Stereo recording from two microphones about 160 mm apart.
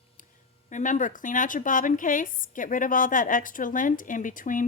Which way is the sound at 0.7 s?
50° left (ahead or behind).